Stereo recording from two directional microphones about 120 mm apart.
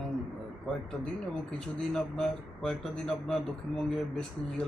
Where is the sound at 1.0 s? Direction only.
5° left (ahead or behind).